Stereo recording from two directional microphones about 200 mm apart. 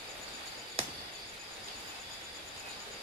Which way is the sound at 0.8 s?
30° right (ahead or behind).